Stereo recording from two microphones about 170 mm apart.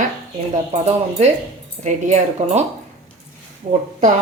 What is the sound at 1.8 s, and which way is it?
Speech, 45° right (ahead or behind).